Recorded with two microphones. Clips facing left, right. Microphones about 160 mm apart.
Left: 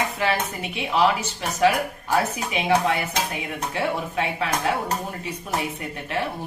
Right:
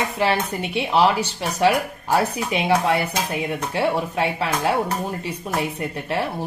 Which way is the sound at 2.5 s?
35° right (ahead or behind).